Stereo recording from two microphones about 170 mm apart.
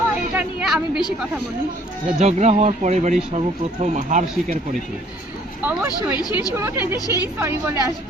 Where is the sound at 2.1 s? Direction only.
40° right (ahead or behind).